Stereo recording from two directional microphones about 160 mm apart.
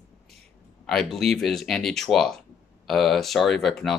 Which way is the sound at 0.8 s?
Centre (ahead or behind).